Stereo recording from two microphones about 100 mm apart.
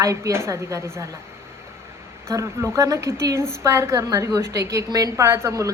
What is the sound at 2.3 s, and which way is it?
A woman's voice, 30° right (ahead or behind).